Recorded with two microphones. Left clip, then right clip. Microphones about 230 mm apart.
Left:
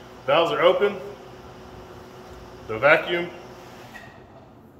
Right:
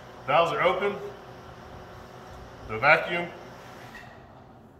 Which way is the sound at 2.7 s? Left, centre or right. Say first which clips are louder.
Left 3 dB; centre.